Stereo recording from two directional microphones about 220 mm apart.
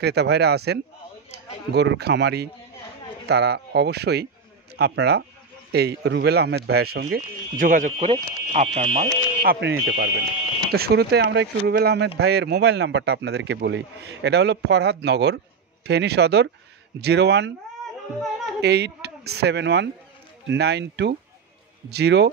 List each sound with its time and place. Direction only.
0.0 s speech: 50° right (ahead or behind)
18.6 s speech: 50° right (ahead or behind)